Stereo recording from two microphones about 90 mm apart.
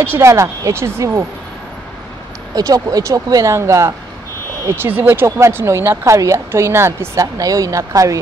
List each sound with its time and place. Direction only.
0.0 s speech: 25° right (ahead or behind)
0.3 s speech: 35° right (ahead or behind)
2.5 s speech: 45° right (ahead or behind); by 7.1 s 30° right (ahead or behind)
7.2 s speech: 40° right (ahead or behind)